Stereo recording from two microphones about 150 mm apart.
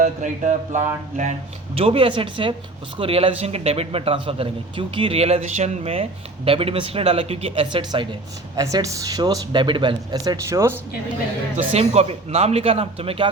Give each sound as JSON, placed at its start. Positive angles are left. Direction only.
{"t": 0.0, "sound": "a man's voice", "side_deg": -55}
{"t": 11.5, "sound": "speech", "side_deg": -45}